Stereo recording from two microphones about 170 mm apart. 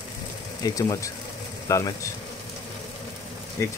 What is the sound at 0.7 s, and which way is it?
Speech, 20° left (ahead or behind).